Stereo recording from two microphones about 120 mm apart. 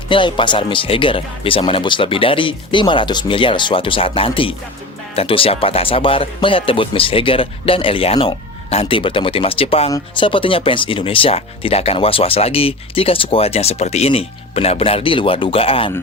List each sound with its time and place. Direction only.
0.1 s speech: 45° left (ahead or behind)